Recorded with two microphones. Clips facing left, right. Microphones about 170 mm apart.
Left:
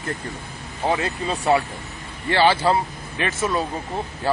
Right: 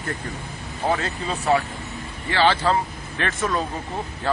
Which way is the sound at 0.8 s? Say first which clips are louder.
Left 1 dB; 10° left (ahead or behind).